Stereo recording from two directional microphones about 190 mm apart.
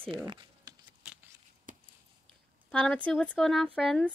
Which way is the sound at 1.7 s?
45° right (ahead or behind).